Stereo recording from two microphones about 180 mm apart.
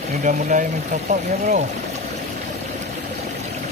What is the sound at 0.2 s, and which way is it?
Speech, 45° right (ahead or behind).